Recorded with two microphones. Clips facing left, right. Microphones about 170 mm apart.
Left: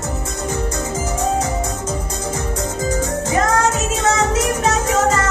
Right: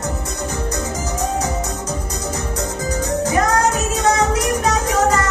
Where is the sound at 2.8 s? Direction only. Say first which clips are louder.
Right 1 dB; 25° left (ahead or behind).